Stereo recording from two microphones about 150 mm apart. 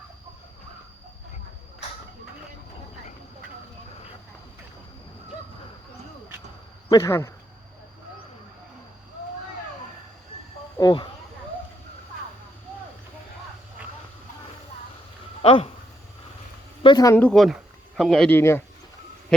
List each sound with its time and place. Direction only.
6.9 s speech: 20° left (ahead or behind)
10.8 s a sound: 30° left (ahead or behind)
15.4 s a sound: 40° left (ahead or behind)
16.8 s speech: 25° left (ahead or behind)
17.2 s speech: 5° left (ahead or behind)
18.3 s speech: 15° left (ahead or behind)